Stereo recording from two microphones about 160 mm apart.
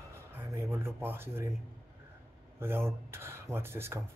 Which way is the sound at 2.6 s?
15° right (ahead or behind).